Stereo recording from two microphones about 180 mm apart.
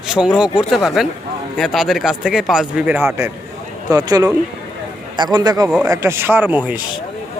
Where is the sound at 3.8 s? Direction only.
20° right (ahead or behind).